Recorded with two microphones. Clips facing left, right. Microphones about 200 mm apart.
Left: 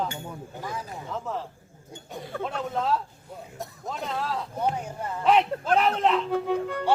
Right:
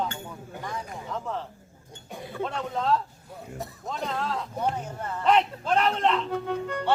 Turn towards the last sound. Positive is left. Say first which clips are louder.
# left 2 dB
turn(degrees=0)  # may be behind; listen again after turning